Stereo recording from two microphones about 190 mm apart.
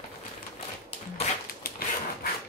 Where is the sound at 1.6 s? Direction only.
50° left (ahead or behind).